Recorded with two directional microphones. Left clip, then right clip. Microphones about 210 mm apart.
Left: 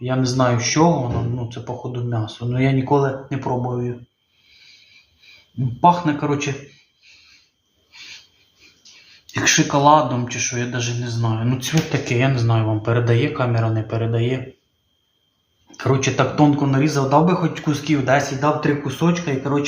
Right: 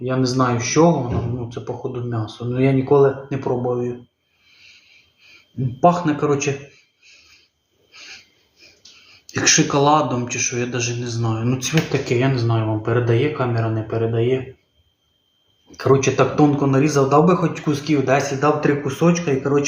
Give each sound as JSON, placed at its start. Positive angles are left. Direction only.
{"t": 0.0, "sound": "a man's voice", "side_deg": 25}
{"t": 5.8, "sound": "a man's voice", "side_deg": 20}
{"t": 9.3, "sound": "a man's voice", "side_deg": 15}
{"t": 15.7, "sound": "a man's voice", "side_deg": 25}